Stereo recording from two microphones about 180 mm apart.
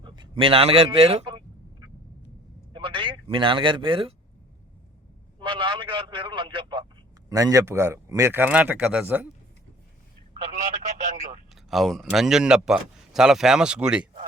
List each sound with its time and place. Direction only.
0.0 s a sound: 25° right (ahead or behind)
2.7 s a man's voice: 30° right (ahead or behind)
5.4 s a man's voice: 25° right (ahead or behind); by 9.3 s 10° right (ahead or behind)
11.0 s telephone: 45° right (ahead or behind)
11.5 s a man's voice: centre (ahead or behind)